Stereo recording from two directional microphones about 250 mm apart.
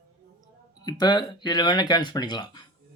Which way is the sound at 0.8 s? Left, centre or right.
Centre.